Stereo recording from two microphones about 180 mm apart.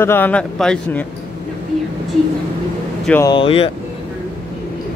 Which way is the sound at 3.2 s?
30° left (ahead or behind).